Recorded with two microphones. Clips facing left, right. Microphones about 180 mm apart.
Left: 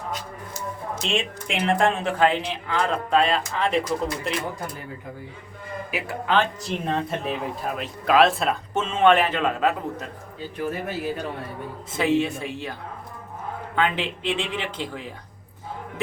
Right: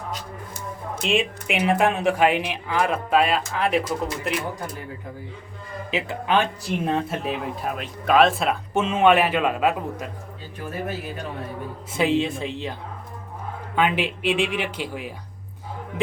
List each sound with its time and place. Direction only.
1.0 s speech: 5° right (ahead or behind)
5.9 s speech: 20° right (ahead or behind)
11.9 s speech: 15° right (ahead or behind)
13.7 s speech: 15° right (ahead or behind)